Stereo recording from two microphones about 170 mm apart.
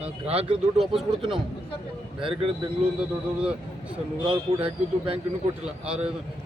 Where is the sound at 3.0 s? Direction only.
5° right (ahead or behind).